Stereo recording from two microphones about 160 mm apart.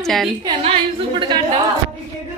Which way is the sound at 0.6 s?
30° right (ahead or behind).